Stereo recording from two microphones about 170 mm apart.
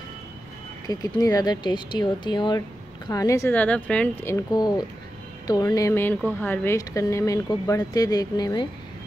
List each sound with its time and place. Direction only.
0.8 s speech: 20° left (ahead or behind)